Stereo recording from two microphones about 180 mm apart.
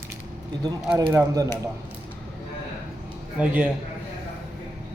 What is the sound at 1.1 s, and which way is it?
Speech, 15° right (ahead or behind).